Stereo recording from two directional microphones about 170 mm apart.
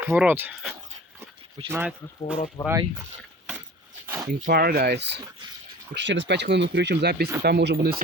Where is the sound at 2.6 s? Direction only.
20° left (ahead or behind).